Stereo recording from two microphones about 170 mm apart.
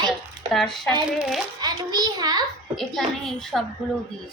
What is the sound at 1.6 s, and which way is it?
Speech, 25° right (ahead or behind).